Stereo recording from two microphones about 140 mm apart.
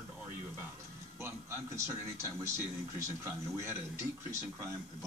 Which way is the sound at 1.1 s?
20° right (ahead or behind).